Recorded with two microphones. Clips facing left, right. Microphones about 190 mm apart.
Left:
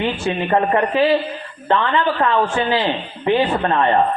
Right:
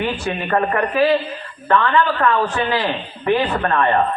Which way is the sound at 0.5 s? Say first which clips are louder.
Left 1 dB; 20° left (ahead or behind).